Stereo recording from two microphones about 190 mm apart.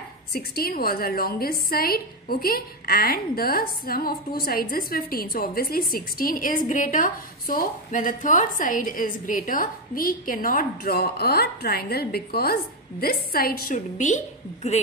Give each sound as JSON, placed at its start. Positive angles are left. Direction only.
{"t": 0.3, "sound": "a woman's voice", "side_deg": 50}